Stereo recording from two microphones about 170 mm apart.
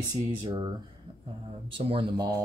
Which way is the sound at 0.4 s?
30° right (ahead or behind).